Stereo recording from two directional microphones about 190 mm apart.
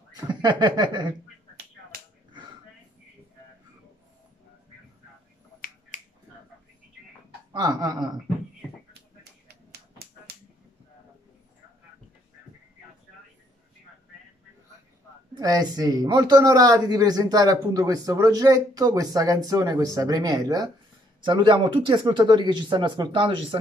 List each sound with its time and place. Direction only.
0.1 s speech: 25° right (ahead or behind)
5.9 s finger snapping: 40° left (ahead or behind)
7.5 s speech: 20° right (ahead or behind)
9.5 s finger snapping: 55° right (ahead or behind)
15.3 s speech: 20° right (ahead or behind)